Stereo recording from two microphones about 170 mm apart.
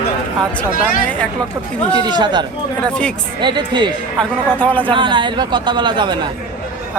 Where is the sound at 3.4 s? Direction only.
25° right (ahead or behind).